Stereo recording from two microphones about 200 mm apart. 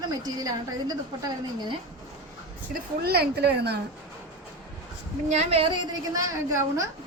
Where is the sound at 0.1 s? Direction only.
20° right (ahead or behind).